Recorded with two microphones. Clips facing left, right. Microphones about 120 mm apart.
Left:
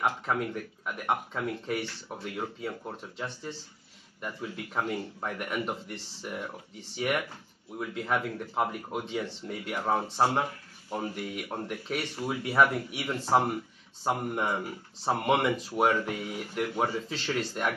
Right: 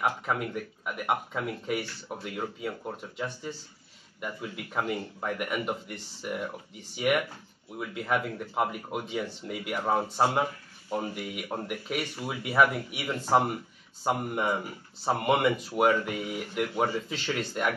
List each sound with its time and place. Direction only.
0.0 s speech: 5° right (ahead or behind)